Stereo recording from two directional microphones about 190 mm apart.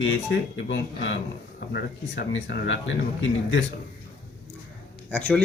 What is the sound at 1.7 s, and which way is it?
Speech, 60° left (ahead or behind).